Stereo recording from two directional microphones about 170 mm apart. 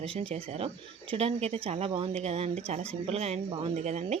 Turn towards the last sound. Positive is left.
turn(degrees=-40)  # may be behind; listen again after turning